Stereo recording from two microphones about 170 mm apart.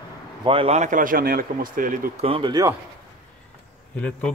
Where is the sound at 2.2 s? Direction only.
30° right (ahead or behind).